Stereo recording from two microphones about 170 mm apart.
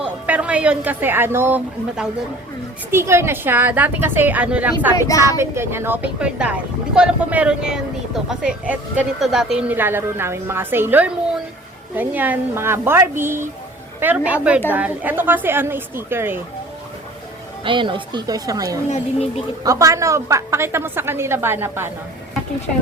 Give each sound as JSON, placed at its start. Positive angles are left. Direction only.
{"t": 0.0, "sound": "speech", "side_deg": -10}
{"t": 17.6, "sound": "speech", "side_deg": -30}
{"t": 18.9, "sound": "speech", "side_deg": 40}
{"t": 19.6, "sound": "speech", "side_deg": -20}